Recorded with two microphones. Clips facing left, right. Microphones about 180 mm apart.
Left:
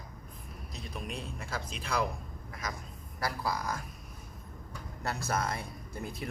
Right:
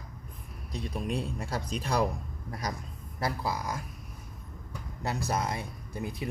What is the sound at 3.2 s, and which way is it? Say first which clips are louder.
Speech: right 2 dB; 20° right (ahead or behind).